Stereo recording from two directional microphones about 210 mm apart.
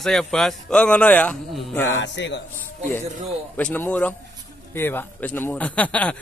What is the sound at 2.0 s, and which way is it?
Speech, 60° left (ahead or behind).